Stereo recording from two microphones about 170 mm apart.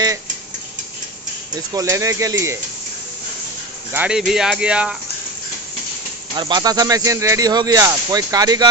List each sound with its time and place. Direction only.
1.5 s speech: 20° right (ahead or behind)
3.9 s speech: 5° right (ahead or behind)
6.3 s speech: 25° right (ahead or behind)